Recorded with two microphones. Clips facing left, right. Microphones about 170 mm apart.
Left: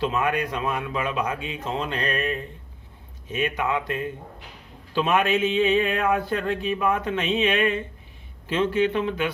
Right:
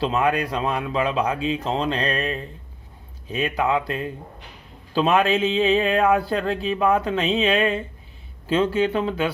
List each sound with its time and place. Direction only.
0.0 s speech: 30° right (ahead or behind)